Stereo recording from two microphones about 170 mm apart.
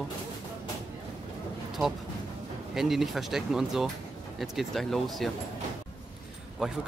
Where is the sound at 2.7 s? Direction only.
Centre (ahead or behind).